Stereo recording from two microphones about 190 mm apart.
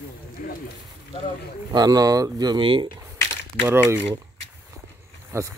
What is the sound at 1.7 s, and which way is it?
Speech, 20° right (ahead or behind).